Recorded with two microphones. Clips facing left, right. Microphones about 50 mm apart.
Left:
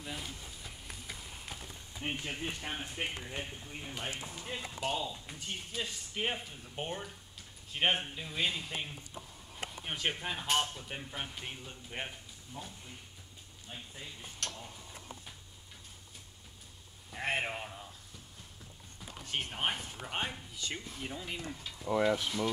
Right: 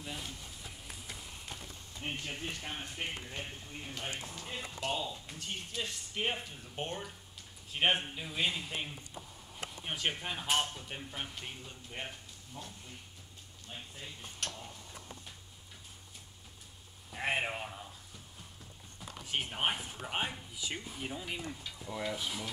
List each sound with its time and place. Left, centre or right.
0.0 s speech: centre
11.4 s speech: centre
17.1 s speech: centre
18.9 s speech: centre
21.8 s speech: left